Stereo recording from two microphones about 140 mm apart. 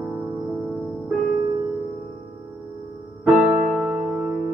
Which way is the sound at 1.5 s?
30° right (ahead or behind).